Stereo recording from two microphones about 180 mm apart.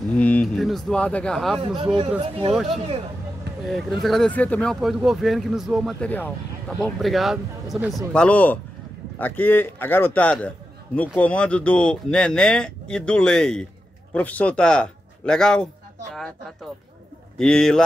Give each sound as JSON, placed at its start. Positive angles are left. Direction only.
{"t": 0.1, "sound": "speech", "side_deg": 5}
{"t": 2.0, "sound": "speech", "side_deg": -30}
{"t": 3.6, "sound": "a man's voice", "side_deg": 0}